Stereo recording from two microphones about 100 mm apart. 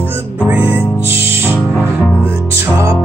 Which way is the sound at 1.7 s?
15° left (ahead or behind).